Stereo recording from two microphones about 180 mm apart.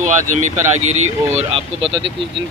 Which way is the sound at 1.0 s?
35° right (ahead or behind).